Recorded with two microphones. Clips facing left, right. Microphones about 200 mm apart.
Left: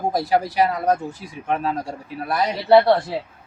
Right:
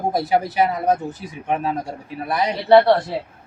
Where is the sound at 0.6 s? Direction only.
20° right (ahead or behind).